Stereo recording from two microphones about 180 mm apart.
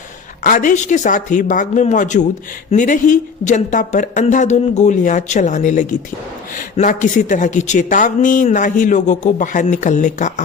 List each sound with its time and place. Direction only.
0.4 s a woman's voice: 45° left (ahead or behind)